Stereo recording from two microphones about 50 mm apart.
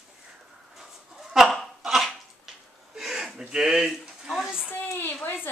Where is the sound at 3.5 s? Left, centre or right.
Centre.